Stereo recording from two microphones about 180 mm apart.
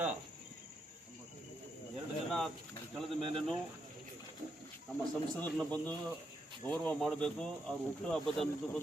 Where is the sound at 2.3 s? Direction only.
Centre (ahead or behind).